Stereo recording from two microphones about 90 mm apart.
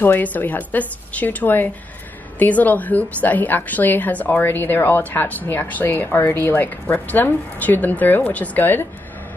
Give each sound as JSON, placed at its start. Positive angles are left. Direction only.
{"t": 0.0, "sound": "a woman's voice", "side_deg": 20}